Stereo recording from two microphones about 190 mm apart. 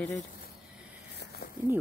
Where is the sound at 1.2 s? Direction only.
55° left (ahead or behind).